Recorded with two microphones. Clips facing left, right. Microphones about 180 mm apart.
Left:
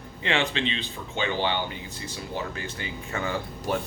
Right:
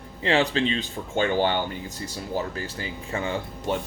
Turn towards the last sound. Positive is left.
turn(degrees=-30)  # may be behind; listen again after turning